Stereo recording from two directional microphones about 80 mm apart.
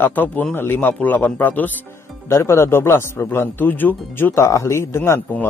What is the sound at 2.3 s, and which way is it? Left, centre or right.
Speech, left.